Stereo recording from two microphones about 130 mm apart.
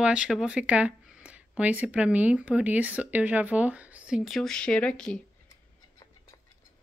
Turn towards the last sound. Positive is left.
turn(degrees=5)  # may be behind; listen again after turning